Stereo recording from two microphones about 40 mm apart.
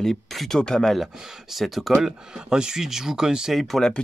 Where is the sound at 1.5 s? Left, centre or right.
Centre.